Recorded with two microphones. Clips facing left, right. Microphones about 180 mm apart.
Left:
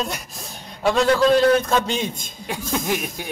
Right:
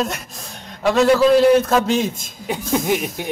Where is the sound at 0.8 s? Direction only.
5° right (ahead or behind).